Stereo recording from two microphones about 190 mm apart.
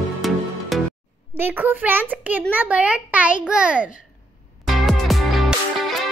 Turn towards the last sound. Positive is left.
turn(degrees=0)  # may be behind; listen again after turning